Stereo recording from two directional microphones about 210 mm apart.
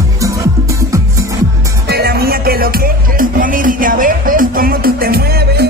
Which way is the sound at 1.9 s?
50° right (ahead or behind).